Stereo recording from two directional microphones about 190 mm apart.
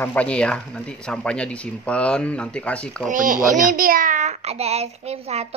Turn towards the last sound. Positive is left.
turn(degrees=-35)  # may be behind; listen again after turning